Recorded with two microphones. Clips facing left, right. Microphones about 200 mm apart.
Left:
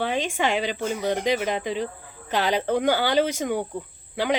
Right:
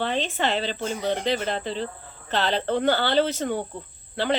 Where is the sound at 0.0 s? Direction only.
10° left (ahead or behind).